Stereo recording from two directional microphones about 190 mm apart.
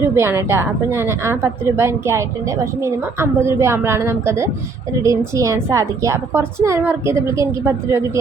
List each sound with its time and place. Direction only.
0.1 s a woman's voice: 15° right (ahead or behind)